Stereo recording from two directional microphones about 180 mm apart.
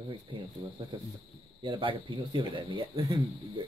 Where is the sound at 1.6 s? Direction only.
30° right (ahead or behind).